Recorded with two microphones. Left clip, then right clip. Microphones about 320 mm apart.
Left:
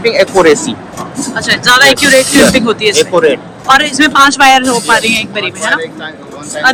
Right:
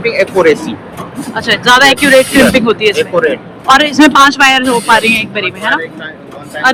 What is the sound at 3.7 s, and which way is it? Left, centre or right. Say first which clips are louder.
Speech: right 1 dB; centre.